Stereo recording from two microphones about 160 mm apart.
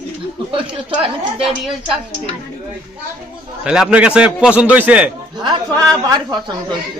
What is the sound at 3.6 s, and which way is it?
A man's voice, 5° right (ahead or behind).